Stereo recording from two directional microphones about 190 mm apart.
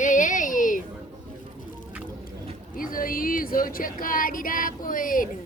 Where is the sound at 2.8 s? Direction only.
45° left (ahead or behind).